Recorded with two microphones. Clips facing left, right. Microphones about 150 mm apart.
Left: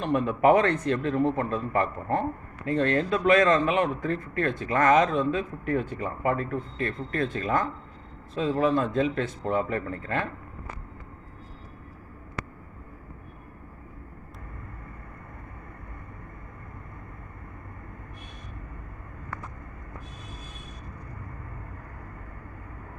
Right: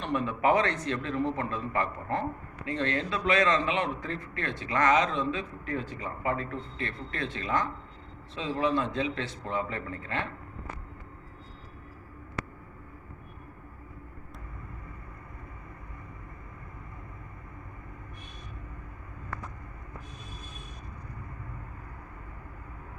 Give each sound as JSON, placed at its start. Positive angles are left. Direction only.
{"t": 0.0, "sound": "a man's voice", "side_deg": 45}